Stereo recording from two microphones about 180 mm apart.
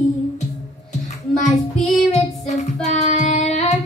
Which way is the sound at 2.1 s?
40° left (ahead or behind).